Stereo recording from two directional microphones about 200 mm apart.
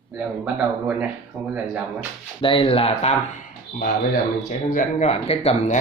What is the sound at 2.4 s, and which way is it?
Speech, 25° left (ahead or behind).